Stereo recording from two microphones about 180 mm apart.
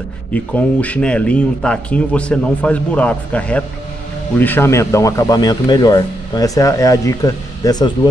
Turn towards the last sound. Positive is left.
turn(degrees=20)  # may be behind; listen again after turning